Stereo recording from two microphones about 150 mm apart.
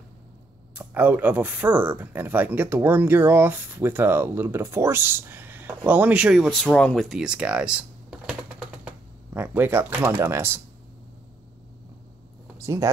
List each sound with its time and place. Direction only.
0.7 s speech: 10° right (ahead or behind)
12.5 s speech: 20° right (ahead or behind)